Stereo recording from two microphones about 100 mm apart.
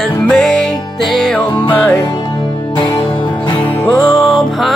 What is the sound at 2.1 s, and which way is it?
Music, 45° left (ahead or behind).